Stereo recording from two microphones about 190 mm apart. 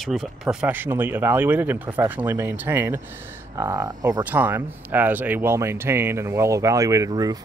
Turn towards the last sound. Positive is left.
turn(degrees=-20)  # may be behind; listen again after turning